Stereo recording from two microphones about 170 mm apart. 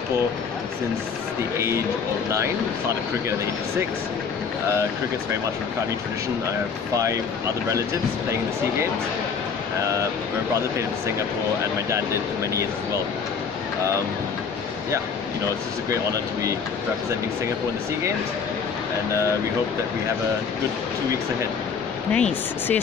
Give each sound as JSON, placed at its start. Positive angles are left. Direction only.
{"t": 7.0, "sound": "speech", "side_deg": -20}
{"t": 11.9, "sound": "speech", "side_deg": -15}
{"t": 15.9, "sound": "speech", "side_deg": -20}
{"t": 22.1, "sound": "speech", "side_deg": 5}